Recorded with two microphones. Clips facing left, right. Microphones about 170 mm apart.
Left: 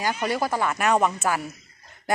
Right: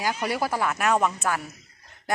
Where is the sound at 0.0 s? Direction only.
5° right (ahead or behind).